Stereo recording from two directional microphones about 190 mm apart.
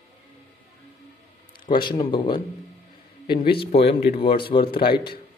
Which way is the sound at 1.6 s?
25° left (ahead or behind).